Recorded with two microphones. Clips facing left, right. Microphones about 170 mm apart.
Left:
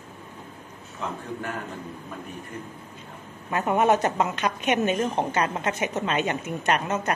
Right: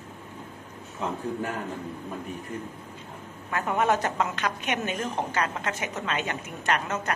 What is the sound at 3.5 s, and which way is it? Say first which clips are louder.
A woman's voice: left 4 dB; 20° left (ahead or behind).